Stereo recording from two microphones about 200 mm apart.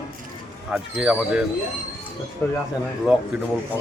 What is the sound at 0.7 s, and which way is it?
Speech, 5° right (ahead or behind).